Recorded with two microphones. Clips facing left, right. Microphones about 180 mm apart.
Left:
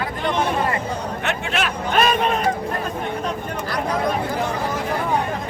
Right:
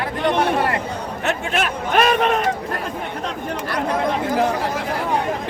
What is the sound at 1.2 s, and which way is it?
Speech, 50° right (ahead or behind).